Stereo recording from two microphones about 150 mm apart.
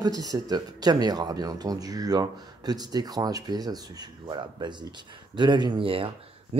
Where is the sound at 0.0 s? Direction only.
25° right (ahead or behind).